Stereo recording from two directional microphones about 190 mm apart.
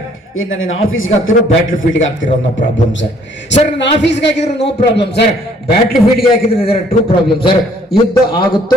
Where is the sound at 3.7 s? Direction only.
65° left (ahead or behind).